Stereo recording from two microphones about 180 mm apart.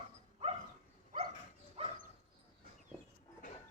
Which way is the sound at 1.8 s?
35° right (ahead or behind).